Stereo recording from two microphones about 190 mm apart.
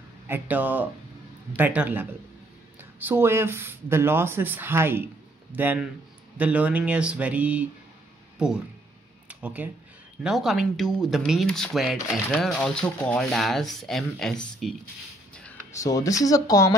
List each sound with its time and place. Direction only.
0.3 s speech: 10° right (ahead or behind)
9.3 s a sound: 10° right (ahead or behind)
10.2 s speech: centre (ahead or behind)
15.7 s speech: 15° left (ahead or behind)